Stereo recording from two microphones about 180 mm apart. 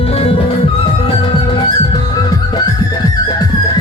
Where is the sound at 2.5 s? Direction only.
20° left (ahead or behind).